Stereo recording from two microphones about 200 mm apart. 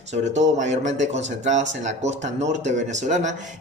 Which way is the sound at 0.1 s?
35° right (ahead or behind).